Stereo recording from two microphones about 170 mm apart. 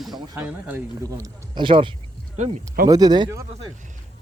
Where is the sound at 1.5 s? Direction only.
30° right (ahead or behind).